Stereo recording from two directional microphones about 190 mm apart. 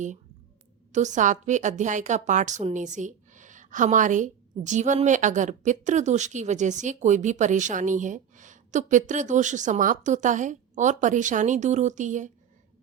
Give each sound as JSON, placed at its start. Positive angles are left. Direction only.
{"t": 0.9, "sound": "a woman's voice", "side_deg": -40}